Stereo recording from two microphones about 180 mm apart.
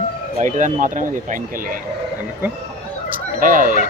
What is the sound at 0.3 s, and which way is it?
Speech, 45° right (ahead or behind).